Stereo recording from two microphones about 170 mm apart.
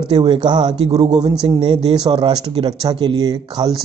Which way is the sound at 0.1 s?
25° right (ahead or behind).